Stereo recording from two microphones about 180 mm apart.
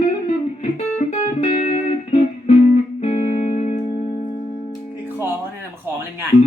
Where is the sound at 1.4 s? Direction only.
40° left (ahead or behind).